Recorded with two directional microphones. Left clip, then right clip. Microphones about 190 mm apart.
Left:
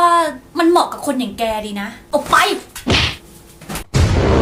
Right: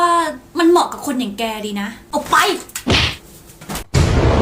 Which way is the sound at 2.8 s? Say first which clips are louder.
Even; centre (ahead or behind).